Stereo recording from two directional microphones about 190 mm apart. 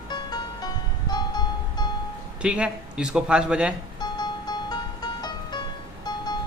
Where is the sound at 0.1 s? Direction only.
20° left (ahead or behind).